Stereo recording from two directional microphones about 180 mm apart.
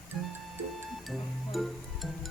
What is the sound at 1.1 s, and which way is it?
Music, centre (ahead or behind).